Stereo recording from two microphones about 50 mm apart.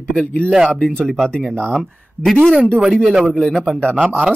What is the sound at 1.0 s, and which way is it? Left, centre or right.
Speech, centre.